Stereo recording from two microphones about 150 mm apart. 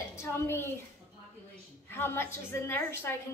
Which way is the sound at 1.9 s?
15° left (ahead or behind).